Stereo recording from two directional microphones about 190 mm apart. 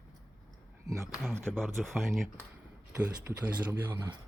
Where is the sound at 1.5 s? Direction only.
Centre (ahead or behind).